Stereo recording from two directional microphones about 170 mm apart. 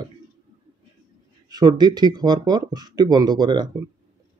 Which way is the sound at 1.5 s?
25° right (ahead or behind).